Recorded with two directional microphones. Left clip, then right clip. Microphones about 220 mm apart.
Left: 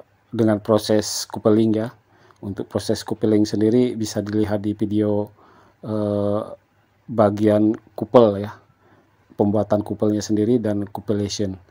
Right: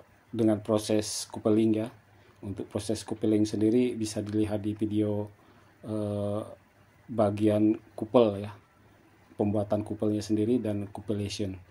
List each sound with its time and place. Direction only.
0.4 s speech: 40° left (ahead or behind)